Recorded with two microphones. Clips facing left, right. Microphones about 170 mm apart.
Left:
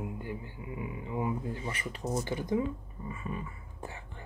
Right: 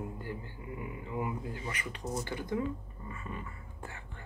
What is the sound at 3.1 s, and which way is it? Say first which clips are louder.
Beatboxing: left 3 dB; 15° left (ahead or behind).